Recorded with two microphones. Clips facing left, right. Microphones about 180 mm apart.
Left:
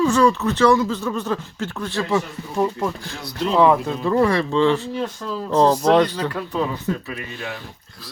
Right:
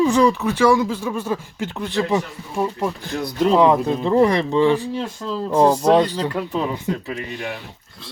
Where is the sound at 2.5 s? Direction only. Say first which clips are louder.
Left 1 dB; 5° right (ahead or behind).